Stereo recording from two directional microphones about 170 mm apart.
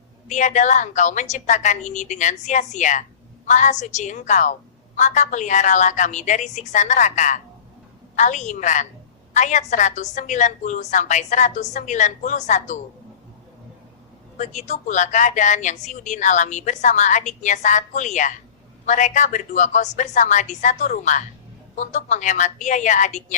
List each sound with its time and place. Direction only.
0.3 s speech: 45° left (ahead or behind)
14.3 s speech: 45° left (ahead or behind)